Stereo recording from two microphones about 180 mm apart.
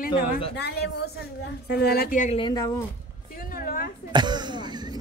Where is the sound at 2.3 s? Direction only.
20° left (ahead or behind).